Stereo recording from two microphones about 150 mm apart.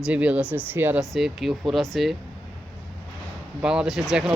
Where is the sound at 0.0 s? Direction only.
10° right (ahead or behind).